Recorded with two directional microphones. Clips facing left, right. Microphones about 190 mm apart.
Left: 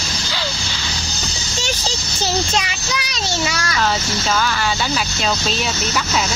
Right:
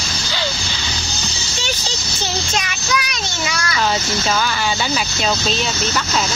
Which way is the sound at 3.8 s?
Centre (ahead or behind).